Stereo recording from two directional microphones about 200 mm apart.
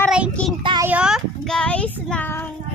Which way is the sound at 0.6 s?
25° right (ahead or behind).